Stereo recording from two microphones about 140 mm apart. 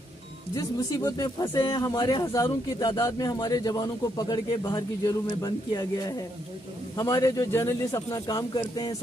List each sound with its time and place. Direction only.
0.6 s speech: 25° left (ahead or behind)